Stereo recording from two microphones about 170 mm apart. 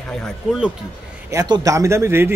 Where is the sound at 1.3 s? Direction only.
20° right (ahead or behind).